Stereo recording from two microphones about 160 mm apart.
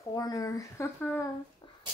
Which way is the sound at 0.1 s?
25° left (ahead or behind).